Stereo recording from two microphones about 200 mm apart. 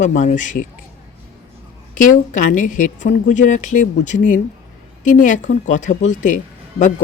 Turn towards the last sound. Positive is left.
turn(degrees=40)  # may be behind; listen again after turning